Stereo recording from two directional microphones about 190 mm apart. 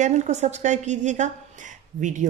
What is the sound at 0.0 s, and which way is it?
Speech, 40° right (ahead or behind).